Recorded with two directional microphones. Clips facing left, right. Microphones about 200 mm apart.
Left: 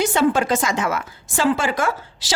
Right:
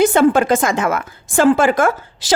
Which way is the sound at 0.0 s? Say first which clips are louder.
Right 6 dB; 55° right (ahead or behind).